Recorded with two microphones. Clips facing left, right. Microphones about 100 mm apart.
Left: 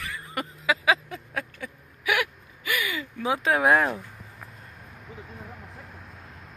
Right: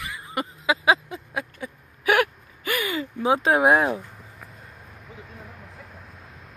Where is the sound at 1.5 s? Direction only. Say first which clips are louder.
Right 3 dB; 30° right (ahead or behind).